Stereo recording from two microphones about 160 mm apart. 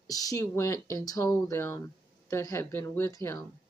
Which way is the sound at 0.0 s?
20° left (ahead or behind).